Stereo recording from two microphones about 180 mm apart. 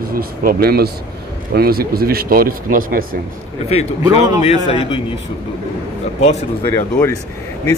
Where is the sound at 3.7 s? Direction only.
35° left (ahead or behind).